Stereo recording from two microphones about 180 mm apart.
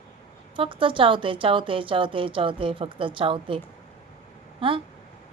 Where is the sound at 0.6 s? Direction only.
30° right (ahead or behind).